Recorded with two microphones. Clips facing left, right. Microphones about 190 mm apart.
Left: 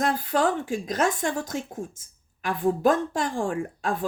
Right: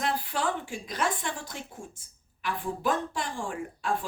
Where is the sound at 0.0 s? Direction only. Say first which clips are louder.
Left 6 dB; 45° left (ahead or behind).